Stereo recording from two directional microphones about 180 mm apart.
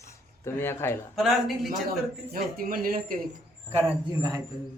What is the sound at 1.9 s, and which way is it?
Speech, 55° right (ahead or behind).